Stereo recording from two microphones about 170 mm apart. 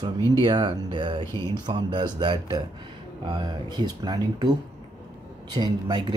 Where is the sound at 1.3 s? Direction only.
15° left (ahead or behind).